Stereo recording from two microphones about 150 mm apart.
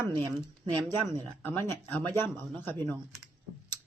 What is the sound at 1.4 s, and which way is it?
Speech, 15° left (ahead or behind).